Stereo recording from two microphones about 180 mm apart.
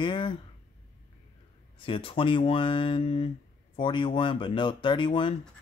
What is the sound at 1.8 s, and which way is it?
Speech, 30° left (ahead or behind).